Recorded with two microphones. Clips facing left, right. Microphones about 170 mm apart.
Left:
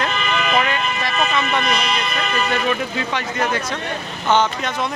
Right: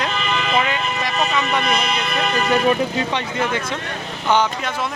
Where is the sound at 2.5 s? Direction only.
30° right (ahead or behind).